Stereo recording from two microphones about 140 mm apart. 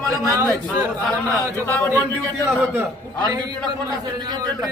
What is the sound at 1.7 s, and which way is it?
Speech, 15° left (ahead or behind).